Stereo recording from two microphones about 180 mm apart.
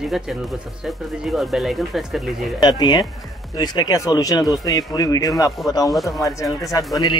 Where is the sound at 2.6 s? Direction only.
25° left (ahead or behind).